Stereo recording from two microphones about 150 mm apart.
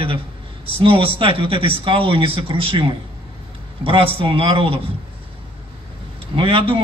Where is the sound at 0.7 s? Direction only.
40° right (ahead or behind).